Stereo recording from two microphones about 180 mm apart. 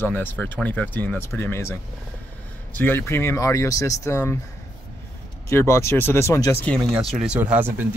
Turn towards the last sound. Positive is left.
turn(degrees=-10)  # may be behind; listen again after turning